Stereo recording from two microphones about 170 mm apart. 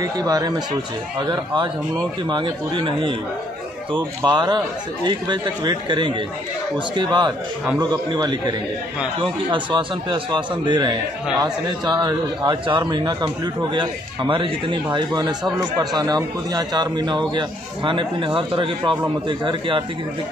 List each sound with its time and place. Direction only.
0.0 s a man's voice: 20° right (ahead or behind)